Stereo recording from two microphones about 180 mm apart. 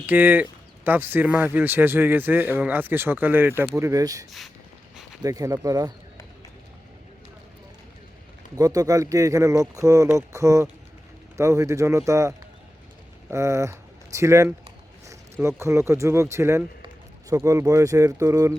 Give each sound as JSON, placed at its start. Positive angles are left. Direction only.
{"t": 0.0, "sound": "a man's voice", "side_deg": -10}
{"t": 4.3, "sound": "speech", "side_deg": 0}
{"t": 5.2, "sound": "speech", "side_deg": -20}
{"t": 8.5, "sound": "a man's voice", "side_deg": -20}
{"t": 13.3, "sound": "speech", "side_deg": -15}